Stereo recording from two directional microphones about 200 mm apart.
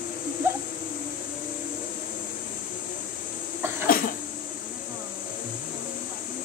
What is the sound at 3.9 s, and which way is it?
Cough, 45° left (ahead or behind).